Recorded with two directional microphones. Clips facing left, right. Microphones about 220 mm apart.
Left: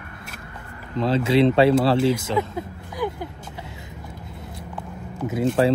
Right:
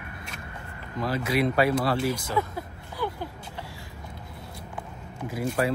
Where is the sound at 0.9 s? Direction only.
25° left (ahead or behind).